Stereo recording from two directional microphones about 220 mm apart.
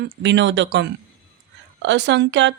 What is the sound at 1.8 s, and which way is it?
Speech, 55° right (ahead or behind).